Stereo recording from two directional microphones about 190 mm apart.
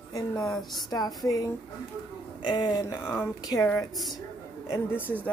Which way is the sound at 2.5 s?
25° left (ahead or behind).